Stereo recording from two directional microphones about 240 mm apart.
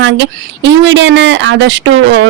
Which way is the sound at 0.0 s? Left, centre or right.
Right.